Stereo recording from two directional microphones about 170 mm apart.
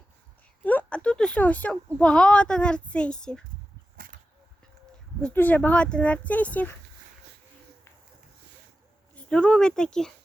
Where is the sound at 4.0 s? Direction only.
55° right (ahead or behind).